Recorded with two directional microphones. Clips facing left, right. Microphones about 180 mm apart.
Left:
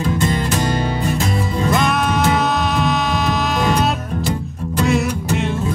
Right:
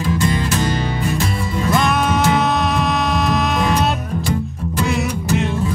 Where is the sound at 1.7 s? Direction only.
Centre (ahead or behind).